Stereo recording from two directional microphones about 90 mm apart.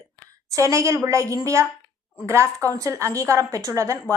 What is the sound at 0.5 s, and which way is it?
A woman's voice, 35° right (ahead or behind).